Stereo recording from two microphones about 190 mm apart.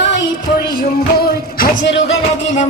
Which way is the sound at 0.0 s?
65° left (ahead or behind).